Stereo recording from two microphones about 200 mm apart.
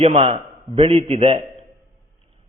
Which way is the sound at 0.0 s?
30° right (ahead or behind).